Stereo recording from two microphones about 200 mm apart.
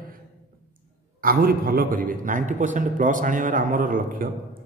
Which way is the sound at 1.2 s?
45° right (ahead or behind).